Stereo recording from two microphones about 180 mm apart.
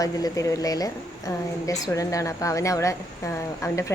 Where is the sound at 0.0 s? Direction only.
20° left (ahead or behind).